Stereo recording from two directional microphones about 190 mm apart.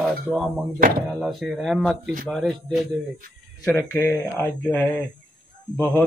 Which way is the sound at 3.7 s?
15° left (ahead or behind).